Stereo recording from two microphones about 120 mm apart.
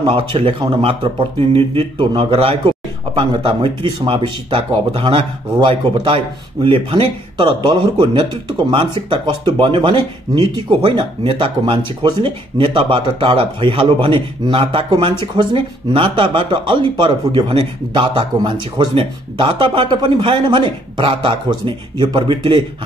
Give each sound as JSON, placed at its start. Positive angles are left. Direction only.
{"t": 0.0, "sound": "speech", "side_deg": -45}